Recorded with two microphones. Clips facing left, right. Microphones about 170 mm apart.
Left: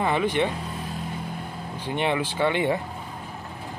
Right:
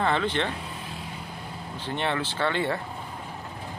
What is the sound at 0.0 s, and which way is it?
Speech, 10° left (ahead or behind).